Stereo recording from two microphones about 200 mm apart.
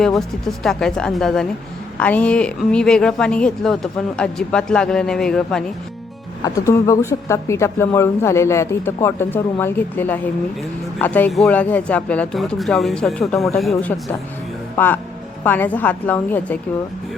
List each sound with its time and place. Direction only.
0.2 s speech: centre (ahead or behind)
6.4 s a woman's voice: 15° left (ahead or behind)